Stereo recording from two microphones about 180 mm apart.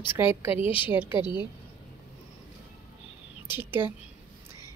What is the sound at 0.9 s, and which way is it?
Speech, 10° right (ahead or behind).